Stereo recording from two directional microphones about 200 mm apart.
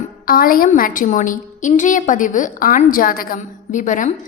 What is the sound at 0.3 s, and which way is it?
A woman's voice, 45° left (ahead or behind).